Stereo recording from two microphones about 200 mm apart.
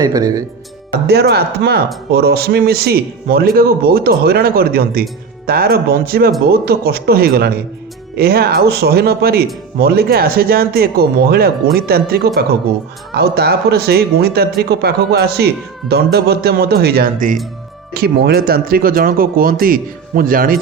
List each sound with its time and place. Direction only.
0.0 s speech: 15° right (ahead or behind)
1.0 s speech: 55° right (ahead or behind)